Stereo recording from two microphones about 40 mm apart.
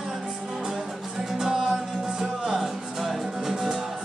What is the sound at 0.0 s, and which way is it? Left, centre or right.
Music, centre.